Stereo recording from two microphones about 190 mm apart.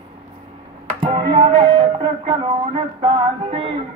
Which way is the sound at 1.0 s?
25° right (ahead or behind).